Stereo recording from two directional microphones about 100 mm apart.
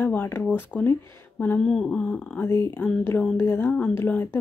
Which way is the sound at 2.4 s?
30° left (ahead or behind).